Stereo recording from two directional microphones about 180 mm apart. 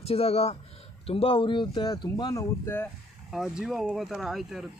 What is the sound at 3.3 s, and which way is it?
Speech, centre (ahead or behind).